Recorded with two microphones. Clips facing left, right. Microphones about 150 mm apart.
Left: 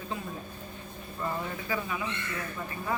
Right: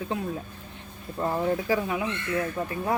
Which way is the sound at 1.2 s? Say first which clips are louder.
Right 9 dB; 75° right (ahead or behind).